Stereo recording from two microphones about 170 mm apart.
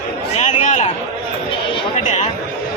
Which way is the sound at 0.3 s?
45° left (ahead or behind).